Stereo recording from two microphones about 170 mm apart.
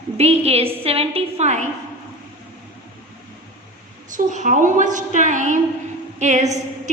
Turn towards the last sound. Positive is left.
turn(degrees=-45)  # may be behind; listen again after turning